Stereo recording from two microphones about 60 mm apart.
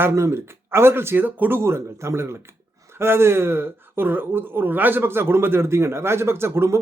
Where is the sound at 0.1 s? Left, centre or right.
Right.